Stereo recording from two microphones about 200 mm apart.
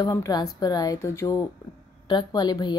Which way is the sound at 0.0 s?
20° left (ahead or behind).